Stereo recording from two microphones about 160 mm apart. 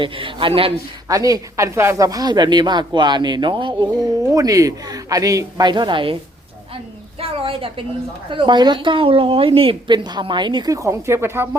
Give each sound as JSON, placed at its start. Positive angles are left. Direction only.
{"t": 0.0, "sound": "a man's voice", "side_deg": -30}
{"t": 1.0, "sound": "a woman's voice", "side_deg": -20}
{"t": 7.2, "sound": "a sound", "side_deg": -35}
{"t": 8.3, "sound": "a woman's voice", "side_deg": -30}